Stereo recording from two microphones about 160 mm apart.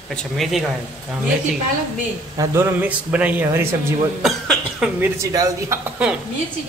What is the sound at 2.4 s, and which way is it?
A man's voice, 15° right (ahead or behind).